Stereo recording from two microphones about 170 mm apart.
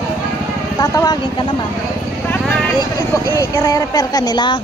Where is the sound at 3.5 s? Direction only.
20° left (ahead or behind).